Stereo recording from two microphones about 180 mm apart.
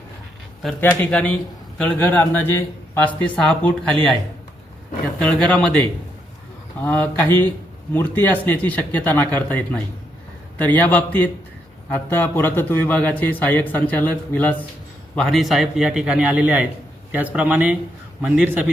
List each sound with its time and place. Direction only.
0.6 s a man's voice: 5° left (ahead or behind)
5.2 s a man's voice: 5° left (ahead or behind)
6.8 s a man's voice: 10° left (ahead or behind); by 18.6 s 10° right (ahead or behind)